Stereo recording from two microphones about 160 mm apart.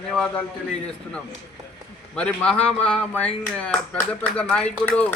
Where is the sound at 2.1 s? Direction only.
5° left (ahead or behind).